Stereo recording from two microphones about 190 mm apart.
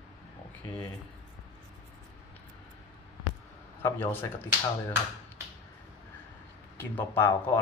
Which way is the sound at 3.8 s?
10° left (ahead or behind).